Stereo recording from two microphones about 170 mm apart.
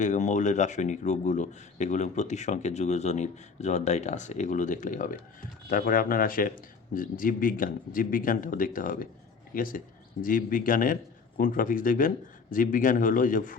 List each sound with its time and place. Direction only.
0.0 s speech: 45° left (ahead or behind)